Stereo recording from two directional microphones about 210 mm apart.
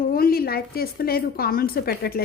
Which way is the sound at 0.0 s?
45° left (ahead or behind).